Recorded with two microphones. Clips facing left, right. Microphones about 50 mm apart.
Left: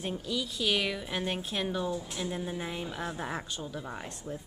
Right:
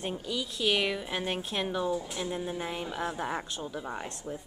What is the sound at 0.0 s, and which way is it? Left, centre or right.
A woman's voice, centre.